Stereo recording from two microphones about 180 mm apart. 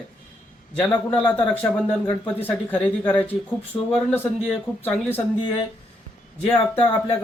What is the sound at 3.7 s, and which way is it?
Speech, 20° left (ahead or behind).